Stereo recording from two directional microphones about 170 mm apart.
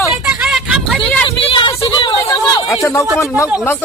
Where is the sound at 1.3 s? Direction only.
30° left (ahead or behind).